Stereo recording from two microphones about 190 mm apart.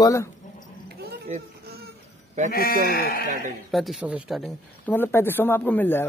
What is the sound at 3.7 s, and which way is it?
Speech, centre (ahead or behind).